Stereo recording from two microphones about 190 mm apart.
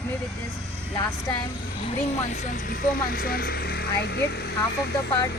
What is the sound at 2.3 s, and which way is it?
Speech, 40° left (ahead or behind).